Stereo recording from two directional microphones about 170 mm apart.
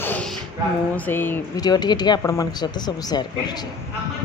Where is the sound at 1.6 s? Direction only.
25° left (ahead or behind).